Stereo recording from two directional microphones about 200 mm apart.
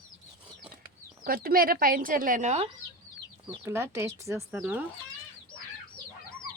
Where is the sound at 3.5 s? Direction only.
15° right (ahead or behind).